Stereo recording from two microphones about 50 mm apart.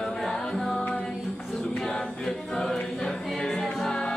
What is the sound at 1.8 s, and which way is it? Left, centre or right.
A capella, centre.